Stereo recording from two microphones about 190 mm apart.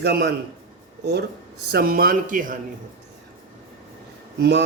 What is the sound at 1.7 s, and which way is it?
Speech, 50° right (ahead or behind).